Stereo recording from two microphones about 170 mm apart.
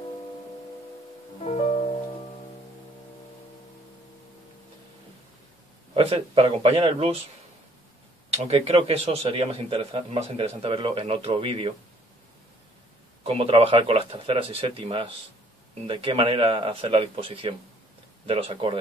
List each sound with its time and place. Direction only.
1.4 s music: 40° left (ahead or behind)
5.9 s a man's voice: 35° right (ahead or behind)
8.3 s a man's voice: 35° right (ahead or behind)
13.2 s a man's voice: 35° right (ahead or behind)